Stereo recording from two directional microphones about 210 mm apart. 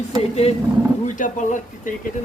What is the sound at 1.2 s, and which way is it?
Speech, 35° left (ahead or behind).